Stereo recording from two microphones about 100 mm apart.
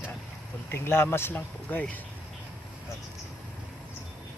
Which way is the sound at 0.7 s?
25° left (ahead or behind).